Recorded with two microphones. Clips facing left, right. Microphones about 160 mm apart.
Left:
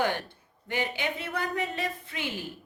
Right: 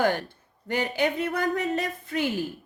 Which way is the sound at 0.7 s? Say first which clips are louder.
Right 6 dB; 40° right (ahead or behind).